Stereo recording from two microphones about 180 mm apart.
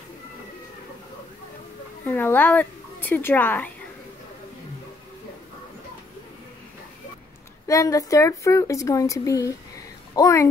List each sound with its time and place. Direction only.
2.0 s speech: 10° left (ahead or behind)
7.6 s speech: 20° left (ahead or behind)